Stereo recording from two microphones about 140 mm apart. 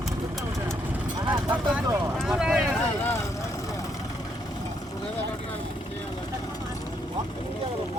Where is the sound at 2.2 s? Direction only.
5° right (ahead or behind).